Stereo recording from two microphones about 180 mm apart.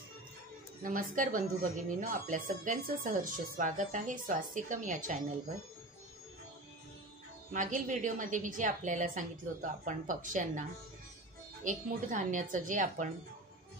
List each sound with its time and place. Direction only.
0.8 s speech: 50° right (ahead or behind)
7.5 s speech: 45° right (ahead or behind)
11.6 s speech: 45° right (ahead or behind)